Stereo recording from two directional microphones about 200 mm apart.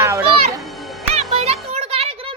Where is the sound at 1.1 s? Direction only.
30° right (ahead or behind).